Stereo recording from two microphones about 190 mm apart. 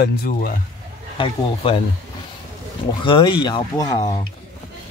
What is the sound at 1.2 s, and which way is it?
Speech, 25° left (ahead or behind).